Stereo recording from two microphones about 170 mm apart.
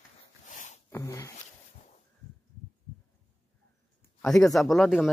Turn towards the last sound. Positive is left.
turn(degrees=0)  # may be behind; listen again after turning